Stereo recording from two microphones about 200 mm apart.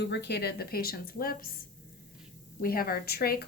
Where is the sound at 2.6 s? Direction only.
50° left (ahead or behind).